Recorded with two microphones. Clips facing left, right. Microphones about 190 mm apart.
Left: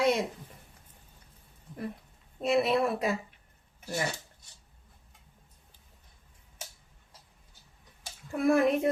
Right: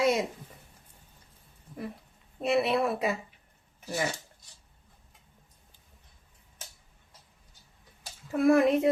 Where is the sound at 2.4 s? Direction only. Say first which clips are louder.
Even; centre (ahead or behind).